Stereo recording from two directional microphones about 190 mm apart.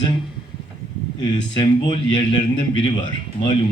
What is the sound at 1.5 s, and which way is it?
Speech, 25° left (ahead or behind).